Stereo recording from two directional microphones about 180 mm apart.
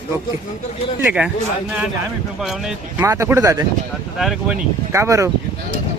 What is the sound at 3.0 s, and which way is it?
Speech, 15° right (ahead or behind).